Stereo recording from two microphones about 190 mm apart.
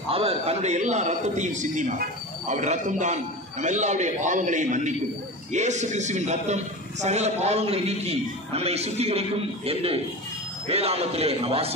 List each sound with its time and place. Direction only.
0.1 s a man's voice: 30° right (ahead or behind)